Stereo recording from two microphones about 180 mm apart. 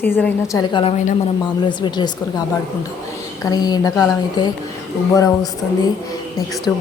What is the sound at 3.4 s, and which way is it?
Speech, 20° left (ahead or behind).